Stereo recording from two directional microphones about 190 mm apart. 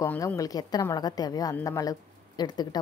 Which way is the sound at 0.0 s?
10° left (ahead or behind).